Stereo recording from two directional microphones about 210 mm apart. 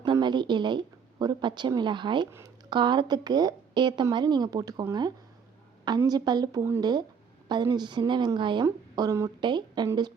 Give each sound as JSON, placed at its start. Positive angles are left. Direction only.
{"t": 0.0, "sound": "a woman's voice", "side_deg": -20}